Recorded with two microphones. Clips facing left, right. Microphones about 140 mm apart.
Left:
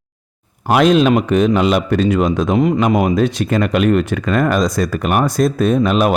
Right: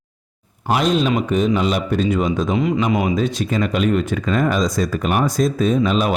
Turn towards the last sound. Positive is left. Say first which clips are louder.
# left 3 dB
turn(degrees=65)  # may be behind; listen again after turning